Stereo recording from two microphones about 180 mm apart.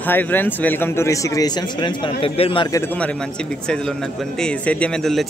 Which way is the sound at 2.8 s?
10° left (ahead or behind).